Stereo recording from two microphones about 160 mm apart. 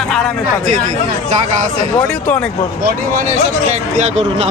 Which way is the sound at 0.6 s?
50° right (ahead or behind).